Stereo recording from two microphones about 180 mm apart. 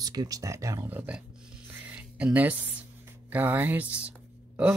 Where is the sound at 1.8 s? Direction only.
5° right (ahead or behind).